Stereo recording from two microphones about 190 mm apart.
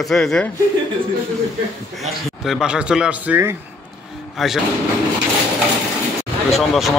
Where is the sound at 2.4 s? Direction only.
Centre (ahead or behind).